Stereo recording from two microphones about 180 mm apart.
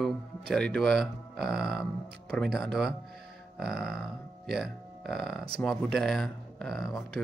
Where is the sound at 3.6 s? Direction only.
60° right (ahead or behind).